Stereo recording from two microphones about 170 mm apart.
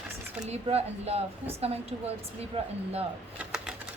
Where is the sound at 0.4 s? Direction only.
40° right (ahead or behind).